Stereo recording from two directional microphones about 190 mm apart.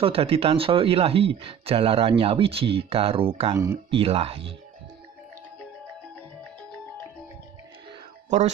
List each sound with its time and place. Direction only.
0.0 s speech: 30° right (ahead or behind)
3.5 s speech: 15° right (ahead or behind)
3.9 s speech: 30° right (ahead or behind)